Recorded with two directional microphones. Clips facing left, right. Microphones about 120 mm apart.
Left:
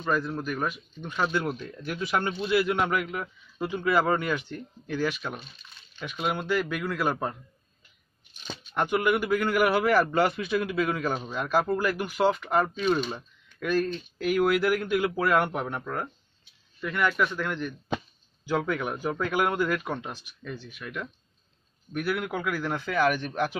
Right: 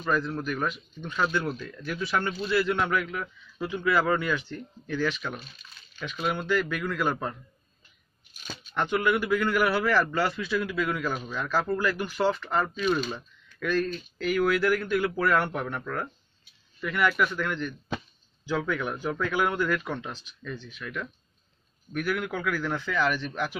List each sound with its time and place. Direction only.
0.1 s speech: 5° left (ahead or behind)
8.5 s speech: 10° left (ahead or behind)
16.8 s a man's voice: centre (ahead or behind)
22.9 s speech: 50° left (ahead or behind)
23.3 s speech: 20° left (ahead or behind)